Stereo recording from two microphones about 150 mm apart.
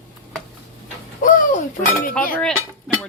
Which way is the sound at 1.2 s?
60° left (ahead or behind).